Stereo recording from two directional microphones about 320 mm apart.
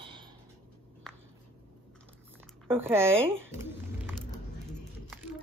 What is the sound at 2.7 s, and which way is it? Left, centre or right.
Speech, centre.